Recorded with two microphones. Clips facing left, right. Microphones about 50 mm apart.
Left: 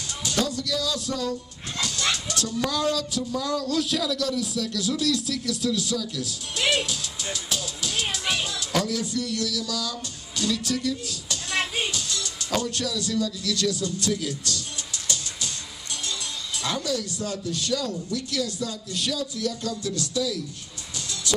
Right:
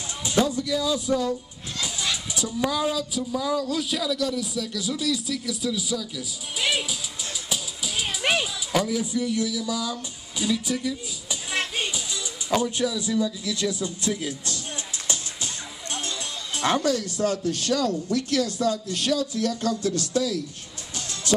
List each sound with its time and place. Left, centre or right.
0.2 s speech: centre
7.4 s music: centre
8.3 s speech: centre; by 14.6 s right
16.5 s speech: right
21.3 s music: right